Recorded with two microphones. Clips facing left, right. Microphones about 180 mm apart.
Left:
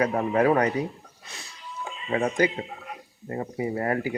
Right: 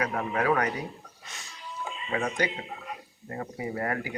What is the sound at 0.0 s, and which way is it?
Speech, 30° left (ahead or behind).